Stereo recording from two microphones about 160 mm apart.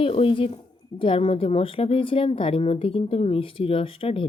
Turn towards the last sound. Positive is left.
turn(degrees=35)  # may be behind; listen again after turning